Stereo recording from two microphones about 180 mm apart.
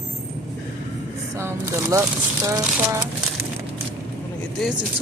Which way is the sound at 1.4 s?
15° right (ahead or behind).